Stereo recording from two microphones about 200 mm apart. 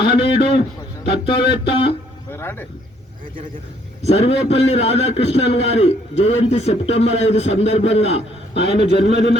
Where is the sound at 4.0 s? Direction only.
30° left (ahead or behind).